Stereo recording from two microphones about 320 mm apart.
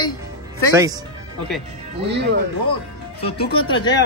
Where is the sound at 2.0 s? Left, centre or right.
Right.